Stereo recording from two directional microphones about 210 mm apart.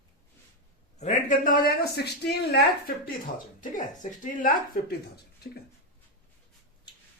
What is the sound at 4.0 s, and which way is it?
Speech, 40° left (ahead or behind).